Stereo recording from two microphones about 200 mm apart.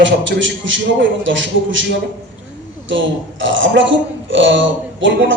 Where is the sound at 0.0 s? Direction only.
65° right (ahead or behind).